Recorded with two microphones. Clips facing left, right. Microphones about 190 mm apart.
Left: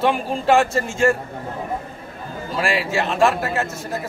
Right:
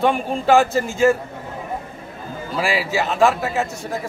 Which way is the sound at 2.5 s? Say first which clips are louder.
Even; centre (ahead or behind).